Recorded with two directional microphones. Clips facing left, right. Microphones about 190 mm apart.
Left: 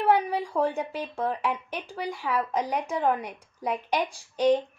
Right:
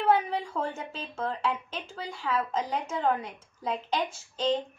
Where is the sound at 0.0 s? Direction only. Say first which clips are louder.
Left 2 dB; 15° left (ahead or behind).